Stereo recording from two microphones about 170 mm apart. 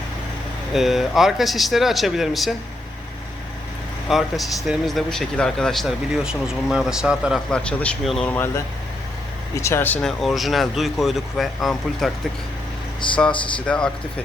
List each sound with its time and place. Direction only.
0.7 s speech: centre (ahead or behind)
4.1 s speech: centre (ahead or behind)
9.6 s speech: 15° left (ahead or behind)
13.0 s speech: 30° left (ahead or behind)
13.7 s speech: 5° left (ahead or behind)